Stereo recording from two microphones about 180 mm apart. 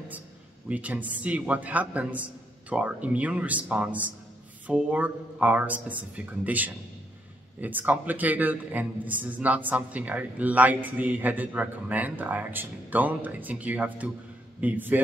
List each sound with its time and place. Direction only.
0.7 s a man's voice: 10° right (ahead or behind)